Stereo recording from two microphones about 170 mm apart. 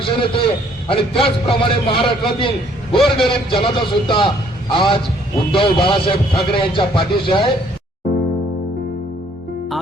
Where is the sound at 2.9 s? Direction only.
Centre (ahead or behind).